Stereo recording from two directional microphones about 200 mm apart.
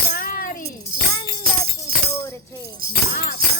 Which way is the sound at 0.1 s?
45° left (ahead or behind).